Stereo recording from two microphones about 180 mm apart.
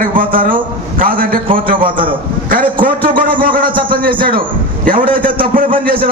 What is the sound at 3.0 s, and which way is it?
Speech, 50° right (ahead or behind).